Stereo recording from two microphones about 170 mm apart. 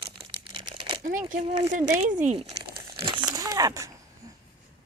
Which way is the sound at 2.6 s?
65° right (ahead or behind).